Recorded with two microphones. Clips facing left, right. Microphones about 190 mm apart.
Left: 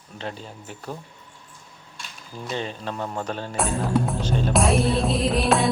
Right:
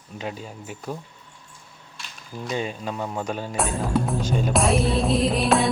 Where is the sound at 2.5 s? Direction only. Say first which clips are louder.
Right 2 dB; 10° right (ahead or behind).